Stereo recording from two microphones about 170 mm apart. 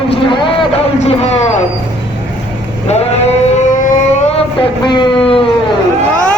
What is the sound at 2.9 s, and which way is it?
Speech, 40° left (ahead or behind).